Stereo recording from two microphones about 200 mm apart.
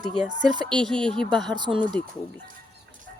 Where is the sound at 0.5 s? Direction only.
20° right (ahead or behind).